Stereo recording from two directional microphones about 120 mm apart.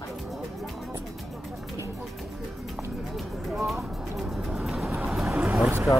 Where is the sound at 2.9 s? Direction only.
Centre (ahead or behind).